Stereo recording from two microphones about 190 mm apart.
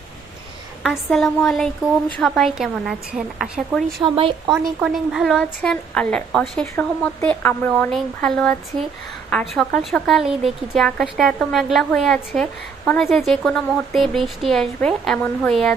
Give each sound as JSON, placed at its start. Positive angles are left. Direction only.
{"t": 0.8, "sound": "a woman's voice", "side_deg": 0}
{"t": 4.0, "sound": "speech", "side_deg": -25}
{"t": 4.5, "sound": "a woman's voice", "side_deg": 0}